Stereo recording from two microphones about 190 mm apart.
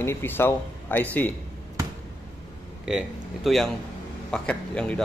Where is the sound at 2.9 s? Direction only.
Centre (ahead or behind).